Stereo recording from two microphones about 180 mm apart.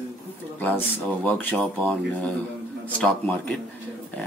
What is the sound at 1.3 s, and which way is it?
Speech, 10° left (ahead or behind).